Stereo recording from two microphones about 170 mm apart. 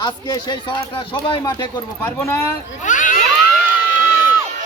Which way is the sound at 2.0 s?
15° left (ahead or behind).